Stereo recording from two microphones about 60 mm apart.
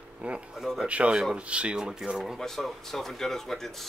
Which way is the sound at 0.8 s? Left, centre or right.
Centre.